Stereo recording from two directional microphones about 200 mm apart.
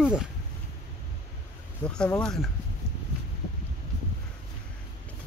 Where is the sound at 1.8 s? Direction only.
5° left (ahead or behind).